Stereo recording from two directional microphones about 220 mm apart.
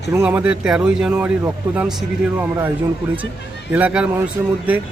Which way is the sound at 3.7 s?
5° right (ahead or behind).